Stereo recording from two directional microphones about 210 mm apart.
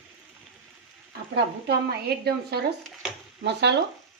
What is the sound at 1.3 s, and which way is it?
A woman's voice, 50° right (ahead or behind).